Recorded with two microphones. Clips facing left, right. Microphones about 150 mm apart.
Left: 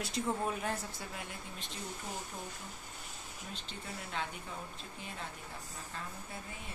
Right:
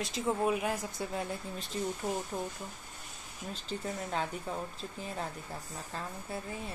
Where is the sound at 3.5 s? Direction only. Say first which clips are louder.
Right 9 dB; 40° right (ahead or behind).